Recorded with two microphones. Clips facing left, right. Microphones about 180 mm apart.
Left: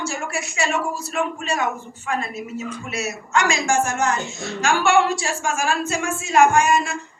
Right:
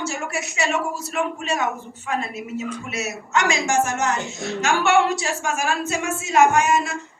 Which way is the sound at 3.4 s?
20° right (ahead or behind).